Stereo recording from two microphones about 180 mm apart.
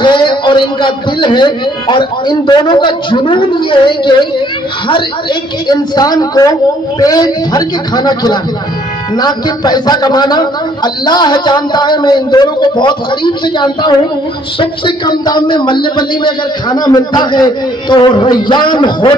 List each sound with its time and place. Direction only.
0.0 s a man's voice: 25° left (ahead or behind)